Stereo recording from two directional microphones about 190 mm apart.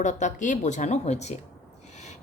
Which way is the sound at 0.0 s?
40° left (ahead or behind).